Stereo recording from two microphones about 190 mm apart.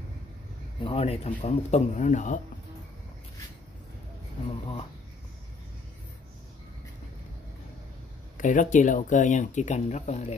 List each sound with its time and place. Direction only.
0.7 s speech: 30° left (ahead or behind)
8.4 s speech: 40° left (ahead or behind)